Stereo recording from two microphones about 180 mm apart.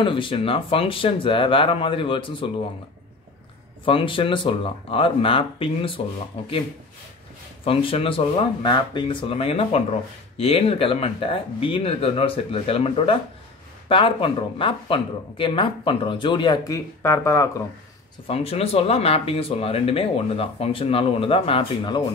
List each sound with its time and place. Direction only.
0.0 s speech: 25° left (ahead or behind)
3.8 s speech: 30° left (ahead or behind)
7.6 s speech: 30° left (ahead or behind)
18.2 s speech: 35° left (ahead or behind)